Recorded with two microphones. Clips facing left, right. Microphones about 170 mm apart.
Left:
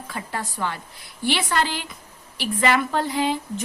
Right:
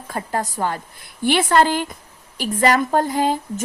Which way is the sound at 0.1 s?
45° right (ahead or behind).